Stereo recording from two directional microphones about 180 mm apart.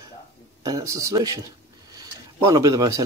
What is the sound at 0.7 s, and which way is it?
Speech, 20° right (ahead or behind).